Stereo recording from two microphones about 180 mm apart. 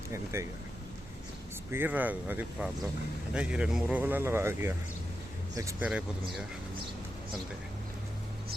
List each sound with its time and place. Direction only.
0.3 s speech: 15° right (ahead or behind)
1.7 s speech: 10° right (ahead or behind)